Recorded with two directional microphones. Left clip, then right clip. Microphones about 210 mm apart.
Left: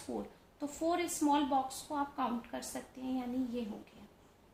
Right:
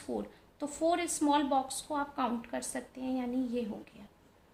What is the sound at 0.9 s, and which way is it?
A woman's voice, 45° right (ahead or behind).